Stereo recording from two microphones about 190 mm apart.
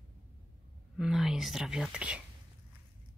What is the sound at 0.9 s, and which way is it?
Speech, centre (ahead or behind).